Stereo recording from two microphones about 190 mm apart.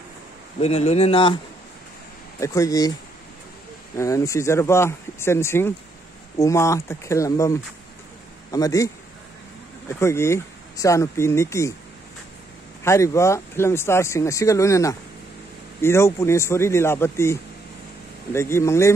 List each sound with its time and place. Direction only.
0.6 s speech: 30° left (ahead or behind)
2.4 s speech: 15° left (ahead or behind)
3.9 s a man's voice: 15° left (ahead or behind)
12.8 s speech: 15° left (ahead or behind)